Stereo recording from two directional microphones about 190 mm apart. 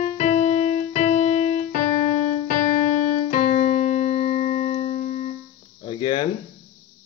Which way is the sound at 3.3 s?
40° left (ahead or behind).